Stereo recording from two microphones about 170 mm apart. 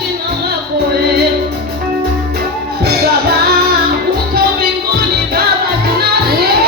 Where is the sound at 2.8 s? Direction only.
65° right (ahead or behind).